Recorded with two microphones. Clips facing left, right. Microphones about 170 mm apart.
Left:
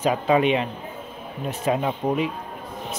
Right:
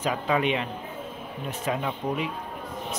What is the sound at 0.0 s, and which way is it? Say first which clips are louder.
Speech: left 6 dB; 25° left (ahead or behind).